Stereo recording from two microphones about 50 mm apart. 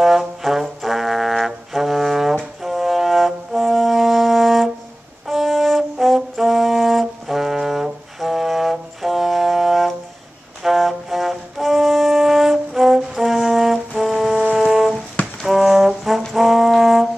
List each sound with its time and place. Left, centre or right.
0.0 s brass instrument: centre
2.6 s music: centre
5.2 s brass instrument: centre
10.6 s music: centre
14.5 s brass instrument: centre
15.4 s music: centre
16.3 s brass instrument: centre